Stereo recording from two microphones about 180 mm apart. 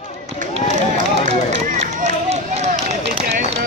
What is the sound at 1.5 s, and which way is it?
Run, 40° right (ahead or behind).